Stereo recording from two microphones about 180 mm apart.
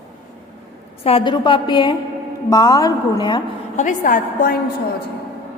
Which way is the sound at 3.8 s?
45° left (ahead or behind).